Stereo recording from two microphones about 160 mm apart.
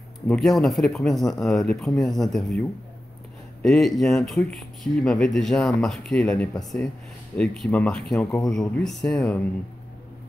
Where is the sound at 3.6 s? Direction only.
Centre (ahead or behind).